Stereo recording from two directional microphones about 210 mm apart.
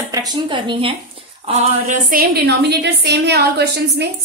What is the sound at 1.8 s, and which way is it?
A woman's voice, 40° right (ahead or behind).